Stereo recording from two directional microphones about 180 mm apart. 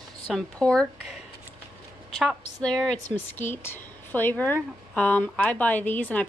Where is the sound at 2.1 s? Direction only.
Centre (ahead or behind).